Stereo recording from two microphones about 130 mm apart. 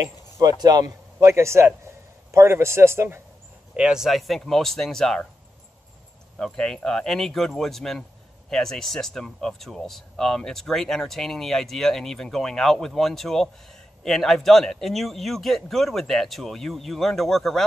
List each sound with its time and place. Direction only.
0.0 s a man's voice: 30° right (ahead or behind)
3.7 s speech: 5° right (ahead or behind)
6.3 s speech: 5° left (ahead or behind)